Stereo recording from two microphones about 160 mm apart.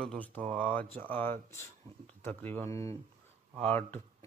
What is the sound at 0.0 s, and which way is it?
Speech, 5° left (ahead or behind).